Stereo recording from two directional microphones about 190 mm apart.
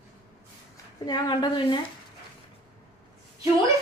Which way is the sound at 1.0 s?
25° left (ahead or behind).